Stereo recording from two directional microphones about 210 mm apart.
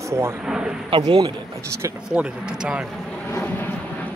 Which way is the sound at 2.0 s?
5° right (ahead or behind).